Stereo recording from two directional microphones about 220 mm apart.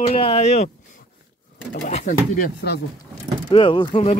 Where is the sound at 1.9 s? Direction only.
35° left (ahead or behind).